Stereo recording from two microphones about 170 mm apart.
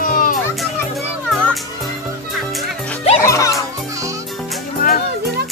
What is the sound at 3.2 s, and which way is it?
Music, 20° left (ahead or behind).